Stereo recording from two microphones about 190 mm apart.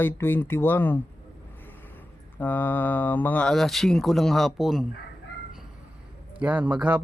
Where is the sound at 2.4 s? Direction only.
10° left (ahead or behind).